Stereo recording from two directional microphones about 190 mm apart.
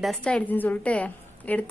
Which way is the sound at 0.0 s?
5° left (ahead or behind).